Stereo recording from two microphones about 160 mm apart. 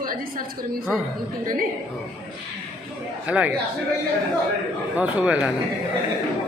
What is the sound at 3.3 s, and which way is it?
Speech, 10° right (ahead or behind).